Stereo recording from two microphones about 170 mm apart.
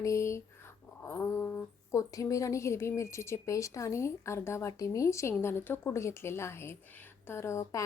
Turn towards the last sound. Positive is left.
turn(degrees=20)  # may be behind; listen again after turning